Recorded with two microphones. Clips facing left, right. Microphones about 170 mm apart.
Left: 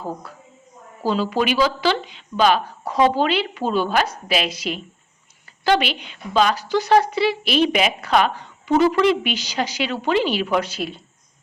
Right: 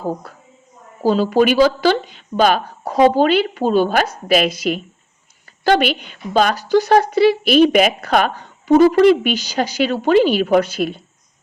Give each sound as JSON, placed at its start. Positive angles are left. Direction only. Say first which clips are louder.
{"t": 1.0, "sound": "speech", "louder": "right 6 dB", "side_deg": -45}